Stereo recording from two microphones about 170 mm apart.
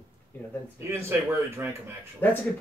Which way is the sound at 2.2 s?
10° left (ahead or behind).